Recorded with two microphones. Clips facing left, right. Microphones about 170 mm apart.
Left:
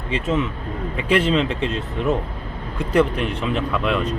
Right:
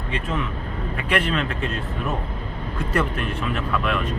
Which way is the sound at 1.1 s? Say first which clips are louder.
Left 5 dB; 25° left (ahead or behind).